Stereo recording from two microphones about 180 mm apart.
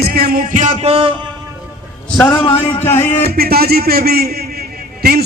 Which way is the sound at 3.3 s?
60° right (ahead or behind).